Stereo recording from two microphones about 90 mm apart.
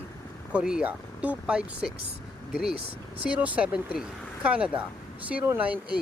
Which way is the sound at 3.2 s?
15° right (ahead or behind).